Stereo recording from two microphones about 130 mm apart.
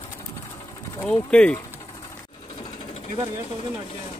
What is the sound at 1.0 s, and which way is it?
Speech, 5° left (ahead or behind).